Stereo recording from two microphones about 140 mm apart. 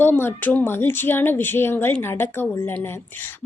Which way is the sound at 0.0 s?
15° left (ahead or behind).